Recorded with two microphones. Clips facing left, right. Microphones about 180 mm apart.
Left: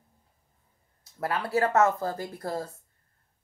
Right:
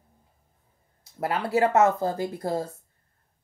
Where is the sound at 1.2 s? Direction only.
20° right (ahead or behind).